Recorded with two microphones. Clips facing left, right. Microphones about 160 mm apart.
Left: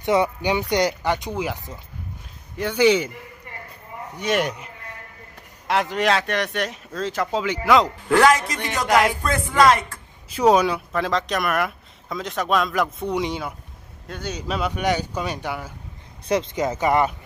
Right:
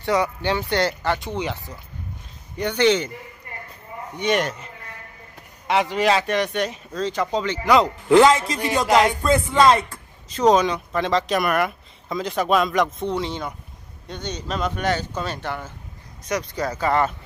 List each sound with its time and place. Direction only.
0.0 s speech: 20° left (ahead or behind)
4.2 s speech: 5° left (ahead or behind)
5.7 s speech: centre (ahead or behind)
8.1 s speech: 20° right (ahead or behind)
10.3 s speech: 10° left (ahead or behind)
16.3 s speech: 25° left (ahead or behind)